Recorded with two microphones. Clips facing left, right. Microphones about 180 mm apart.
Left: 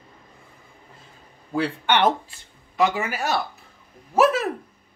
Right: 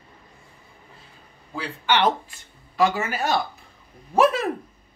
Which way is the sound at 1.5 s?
60° left (ahead or behind).